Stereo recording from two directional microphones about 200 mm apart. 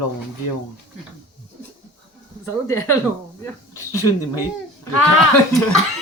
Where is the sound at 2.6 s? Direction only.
10° left (ahead or behind).